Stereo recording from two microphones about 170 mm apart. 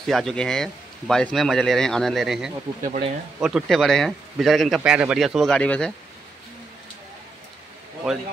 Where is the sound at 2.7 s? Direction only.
35° right (ahead or behind).